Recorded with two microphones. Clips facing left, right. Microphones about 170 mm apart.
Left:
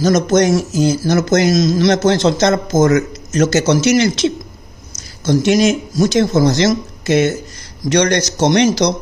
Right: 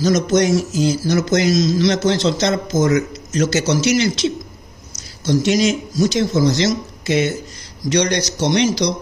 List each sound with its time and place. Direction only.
0.0 s speech: 50° left (ahead or behind)